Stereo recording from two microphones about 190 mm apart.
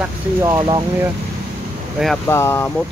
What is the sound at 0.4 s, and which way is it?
Speech, 20° right (ahead or behind).